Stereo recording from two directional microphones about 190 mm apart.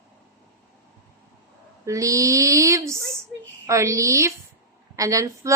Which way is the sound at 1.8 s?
15° right (ahead or behind).